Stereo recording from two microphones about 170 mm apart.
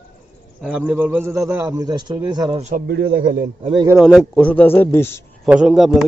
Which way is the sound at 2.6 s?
45° right (ahead or behind).